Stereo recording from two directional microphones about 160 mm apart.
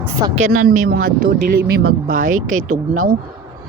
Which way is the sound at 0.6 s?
60° right (ahead or behind).